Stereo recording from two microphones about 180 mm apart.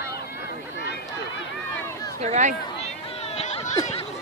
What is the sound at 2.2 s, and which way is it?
Speech, 40° right (ahead or behind).